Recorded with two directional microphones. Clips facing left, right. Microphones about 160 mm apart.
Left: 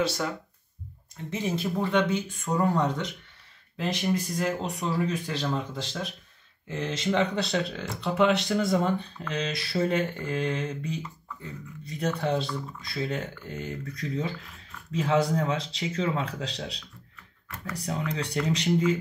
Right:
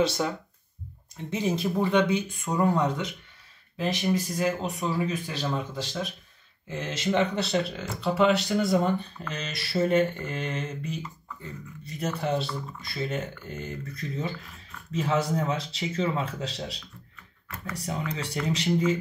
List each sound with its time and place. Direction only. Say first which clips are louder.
1.3 s speech: right 2 dB; 15° right (ahead or behind)